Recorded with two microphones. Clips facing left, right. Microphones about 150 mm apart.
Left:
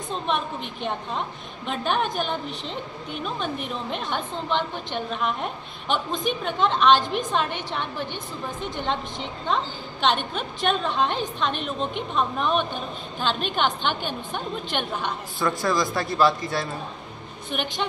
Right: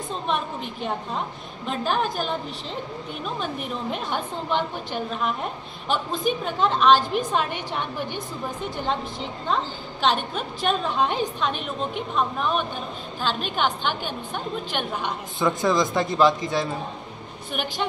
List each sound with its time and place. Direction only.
1.7 s a woman's voice: centre (ahead or behind)
3.9 s a woman's voice: 10° right (ahead or behind)
15.3 s a woman's voice: 20° right (ahead or behind)